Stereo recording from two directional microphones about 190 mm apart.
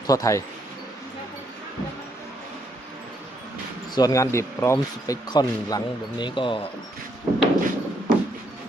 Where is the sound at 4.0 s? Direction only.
20° left (ahead or behind).